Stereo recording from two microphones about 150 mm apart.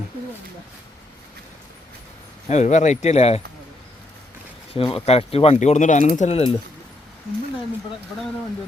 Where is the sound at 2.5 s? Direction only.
50° left (ahead or behind).